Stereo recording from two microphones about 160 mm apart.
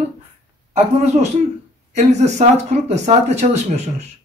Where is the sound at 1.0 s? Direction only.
40° right (ahead or behind).